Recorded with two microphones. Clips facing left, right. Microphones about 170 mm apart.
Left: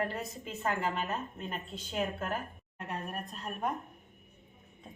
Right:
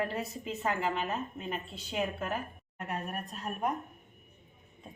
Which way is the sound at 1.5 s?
10° right (ahead or behind).